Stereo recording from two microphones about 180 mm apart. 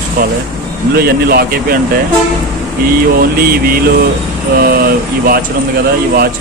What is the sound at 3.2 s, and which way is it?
Speech, 55° right (ahead or behind).